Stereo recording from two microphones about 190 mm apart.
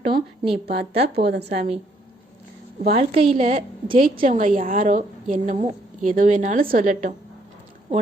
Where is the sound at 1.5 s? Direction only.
35° right (ahead or behind).